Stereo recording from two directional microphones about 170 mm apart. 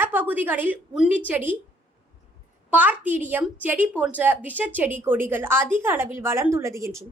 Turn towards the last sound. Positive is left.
turn(degrees=-15)  # may be behind; listen again after turning